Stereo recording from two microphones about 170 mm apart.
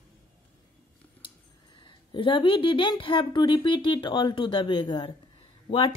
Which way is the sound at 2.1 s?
30° left (ahead or behind).